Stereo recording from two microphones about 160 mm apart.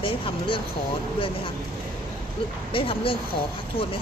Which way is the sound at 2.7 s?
35° left (ahead or behind).